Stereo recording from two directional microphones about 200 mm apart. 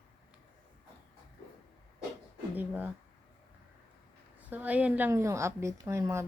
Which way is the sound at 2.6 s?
10° right (ahead or behind).